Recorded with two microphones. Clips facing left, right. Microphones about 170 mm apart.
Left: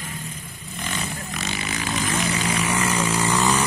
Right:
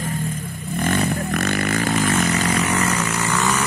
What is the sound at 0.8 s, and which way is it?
Vehicle, 55° right (ahead or behind).